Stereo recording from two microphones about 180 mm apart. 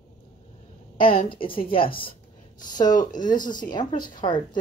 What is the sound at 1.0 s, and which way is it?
Speech, 30° left (ahead or behind).